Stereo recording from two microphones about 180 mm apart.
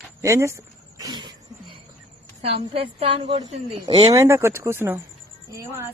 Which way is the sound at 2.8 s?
30° right (ahead or behind).